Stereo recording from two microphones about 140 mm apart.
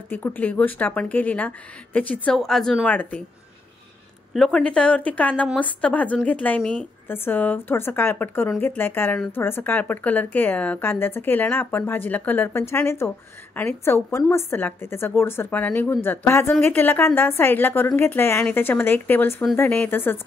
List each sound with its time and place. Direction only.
0.1 s speech: 15° left (ahead or behind)
4.3 s speech: 5° left (ahead or behind)